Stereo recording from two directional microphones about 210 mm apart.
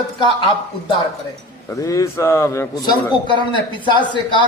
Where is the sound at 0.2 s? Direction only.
20° left (ahead or behind).